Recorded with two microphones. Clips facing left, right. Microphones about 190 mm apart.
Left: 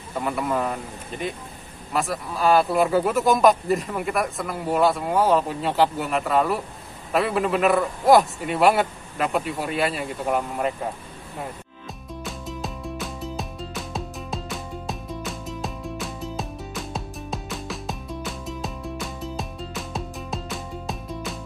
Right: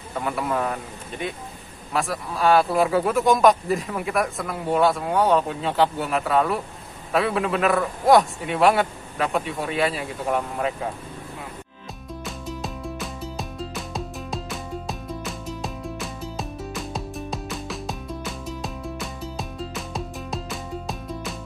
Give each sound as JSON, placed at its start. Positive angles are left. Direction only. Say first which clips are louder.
{"t": 0.2, "sound": "speech", "louder": "even", "side_deg": 0}
{"t": 12.3, "sound": "music", "louder": "even", "side_deg": 0}